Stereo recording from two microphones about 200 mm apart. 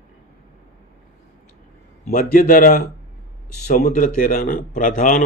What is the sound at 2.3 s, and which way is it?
A man's voice, 45° left (ahead or behind).